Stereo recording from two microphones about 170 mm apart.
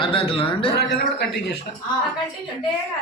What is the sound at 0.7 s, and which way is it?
Speech, 85° left.